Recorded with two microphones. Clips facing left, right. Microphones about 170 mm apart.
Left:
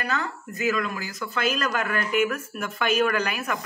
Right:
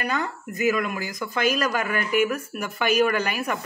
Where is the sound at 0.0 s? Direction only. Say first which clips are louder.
Right 2 dB; 15° right (ahead or behind).